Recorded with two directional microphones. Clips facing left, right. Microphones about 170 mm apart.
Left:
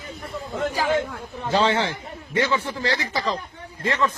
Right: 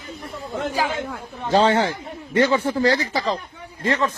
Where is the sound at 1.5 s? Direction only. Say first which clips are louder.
Right 4 dB; 45° right (ahead or behind).